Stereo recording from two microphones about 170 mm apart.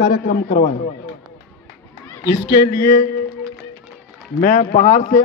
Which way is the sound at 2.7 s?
60° left (ahead or behind).